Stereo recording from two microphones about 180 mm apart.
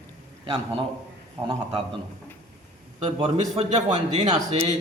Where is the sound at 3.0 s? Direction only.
35° right (ahead or behind).